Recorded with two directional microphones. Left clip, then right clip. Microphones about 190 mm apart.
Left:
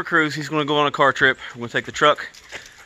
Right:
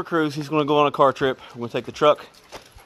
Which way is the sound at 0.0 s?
5° left (ahead or behind).